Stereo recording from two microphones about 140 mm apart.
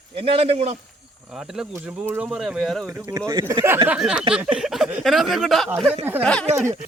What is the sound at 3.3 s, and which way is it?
Speech, 30° right (ahead or behind).